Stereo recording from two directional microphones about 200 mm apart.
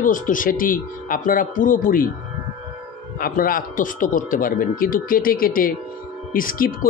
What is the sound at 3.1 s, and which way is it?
Speech, 45° left (ahead or behind).